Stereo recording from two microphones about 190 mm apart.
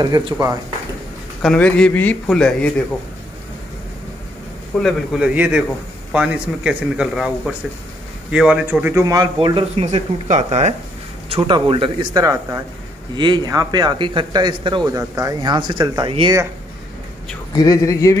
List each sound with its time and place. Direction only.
0.0 s speech: 20° right (ahead or behind)
1.4 s speech: 5° left (ahead or behind)
4.7 s speech: centre (ahead or behind)
9.0 s speech: 20° right (ahead or behind)
17.6 s speech: 15° left (ahead or behind)